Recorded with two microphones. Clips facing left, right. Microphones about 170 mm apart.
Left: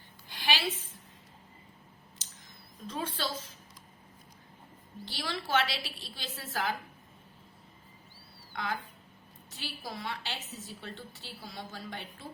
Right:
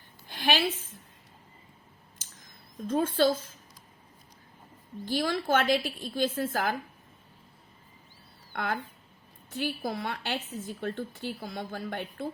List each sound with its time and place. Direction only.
0.3 s a sound: 50° right (ahead or behind)
2.8 s a woman's voice: 50° right (ahead or behind)
5.0 s a woman's voice: 50° right (ahead or behind)
8.5 s a woman's voice: 55° right (ahead or behind)